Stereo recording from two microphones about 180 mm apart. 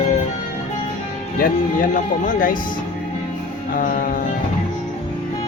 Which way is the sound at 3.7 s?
50° left (ahead or behind).